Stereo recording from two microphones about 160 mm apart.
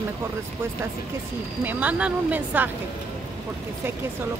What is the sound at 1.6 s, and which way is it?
Speech, 10° right (ahead or behind).